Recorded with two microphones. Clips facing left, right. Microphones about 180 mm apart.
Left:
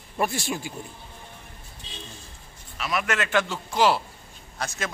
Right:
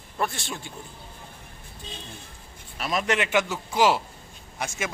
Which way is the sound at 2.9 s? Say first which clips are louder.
Right 2 dB; 25° right (ahead or behind).